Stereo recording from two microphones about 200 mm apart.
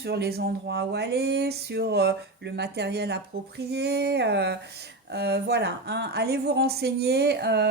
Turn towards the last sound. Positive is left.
turn(degrees=-55)  # may be behind; listen again after turning